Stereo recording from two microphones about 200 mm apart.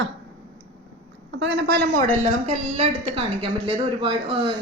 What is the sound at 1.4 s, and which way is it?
Speech, 60° right (ahead or behind).